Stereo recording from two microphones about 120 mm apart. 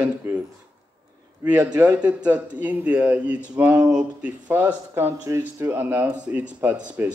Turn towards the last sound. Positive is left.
turn(degrees=-15)  # may be behind; listen again after turning